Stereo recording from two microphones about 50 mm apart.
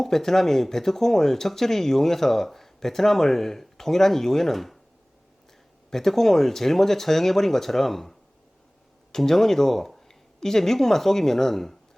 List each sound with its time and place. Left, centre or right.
0.0 s speech: centre
5.9 s speech: centre
9.1 s speech: centre